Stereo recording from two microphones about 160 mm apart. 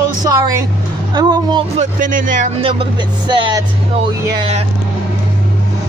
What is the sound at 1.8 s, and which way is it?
Speech, 55° right (ahead or behind).